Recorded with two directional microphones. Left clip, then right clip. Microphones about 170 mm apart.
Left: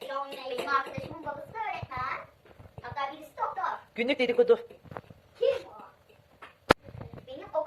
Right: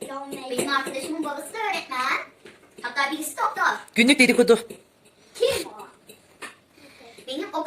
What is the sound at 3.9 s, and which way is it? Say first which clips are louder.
Speech: right 8 dB; 10° right (ahead or behind).